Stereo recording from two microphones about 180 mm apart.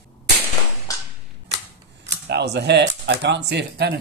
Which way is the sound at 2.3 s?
70° right (ahead or behind).